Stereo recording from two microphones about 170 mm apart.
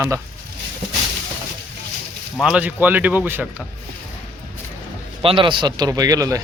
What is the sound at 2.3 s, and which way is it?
Speech, 5° right (ahead or behind).